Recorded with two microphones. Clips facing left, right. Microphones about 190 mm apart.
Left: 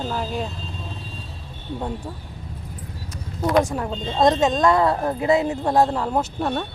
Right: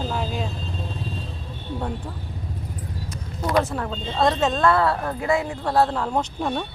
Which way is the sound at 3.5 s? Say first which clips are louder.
Left 2 dB; 15° left (ahead or behind).